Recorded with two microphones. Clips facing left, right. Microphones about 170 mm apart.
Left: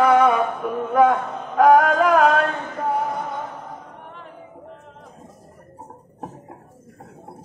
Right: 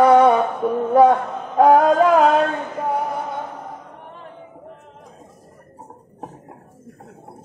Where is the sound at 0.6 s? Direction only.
35° right (ahead or behind).